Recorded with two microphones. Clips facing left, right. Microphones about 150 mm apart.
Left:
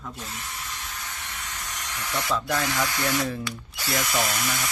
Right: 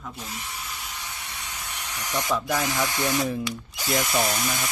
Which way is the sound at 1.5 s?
10° right (ahead or behind).